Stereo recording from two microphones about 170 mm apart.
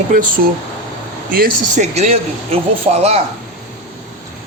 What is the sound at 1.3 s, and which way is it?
Speech, 60° right (ahead or behind).